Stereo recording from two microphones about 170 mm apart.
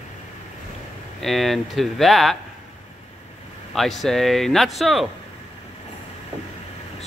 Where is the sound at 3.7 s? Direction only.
Centre (ahead or behind).